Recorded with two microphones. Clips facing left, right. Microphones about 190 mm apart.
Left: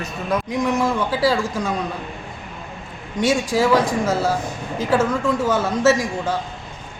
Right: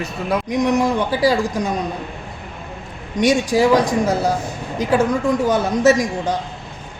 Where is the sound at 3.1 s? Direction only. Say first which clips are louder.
Right 3 dB; 15° right (ahead or behind).